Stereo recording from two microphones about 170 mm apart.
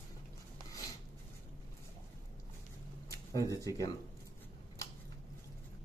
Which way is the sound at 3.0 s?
20° left (ahead or behind).